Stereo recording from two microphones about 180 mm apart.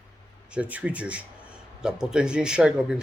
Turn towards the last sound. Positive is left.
turn(degrees=-5)  # may be behind; listen again after turning